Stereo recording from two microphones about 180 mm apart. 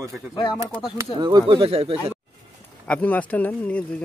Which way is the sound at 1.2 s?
25° right (ahead or behind).